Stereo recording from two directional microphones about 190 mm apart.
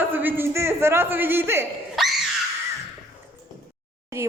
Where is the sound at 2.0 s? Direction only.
Centre (ahead or behind).